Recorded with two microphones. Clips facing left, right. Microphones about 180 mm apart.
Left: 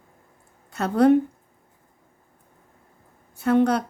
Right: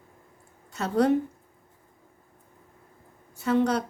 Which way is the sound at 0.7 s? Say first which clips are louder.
Left 5 dB; 60° left (ahead or behind).